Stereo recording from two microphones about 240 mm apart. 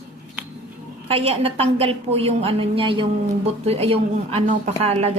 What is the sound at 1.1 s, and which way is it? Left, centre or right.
Speech, right.